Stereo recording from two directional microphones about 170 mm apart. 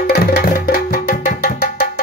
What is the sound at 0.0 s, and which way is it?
Music, 65° left (ahead or behind).